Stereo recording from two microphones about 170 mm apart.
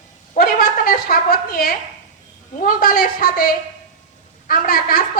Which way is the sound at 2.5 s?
55° left (ahead or behind).